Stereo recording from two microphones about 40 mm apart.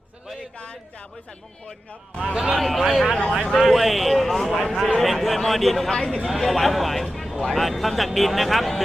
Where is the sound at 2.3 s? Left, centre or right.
Centre.